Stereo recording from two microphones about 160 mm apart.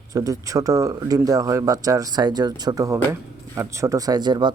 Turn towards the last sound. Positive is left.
turn(degrees=-25)  # may be behind; listen again after turning